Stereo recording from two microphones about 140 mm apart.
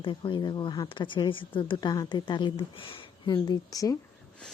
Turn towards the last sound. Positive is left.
turn(degrees=25)  # may be behind; listen again after turning